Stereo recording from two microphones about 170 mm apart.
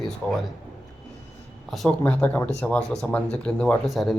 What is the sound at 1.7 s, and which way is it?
Speech, 5° left (ahead or behind).